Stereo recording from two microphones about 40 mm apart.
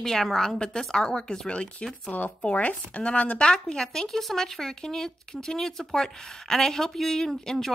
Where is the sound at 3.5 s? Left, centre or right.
Left.